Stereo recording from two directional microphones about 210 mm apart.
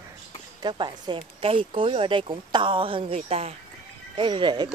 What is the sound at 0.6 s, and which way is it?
Speech, 20° right (ahead or behind).